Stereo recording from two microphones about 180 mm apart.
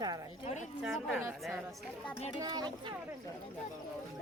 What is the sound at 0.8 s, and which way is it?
Speech, centre (ahead or behind).